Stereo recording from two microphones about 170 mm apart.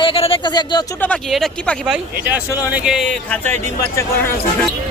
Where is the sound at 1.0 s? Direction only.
5° left (ahead or behind).